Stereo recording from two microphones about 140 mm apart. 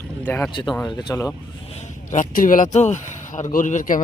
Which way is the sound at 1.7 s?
65° left (ahead or behind).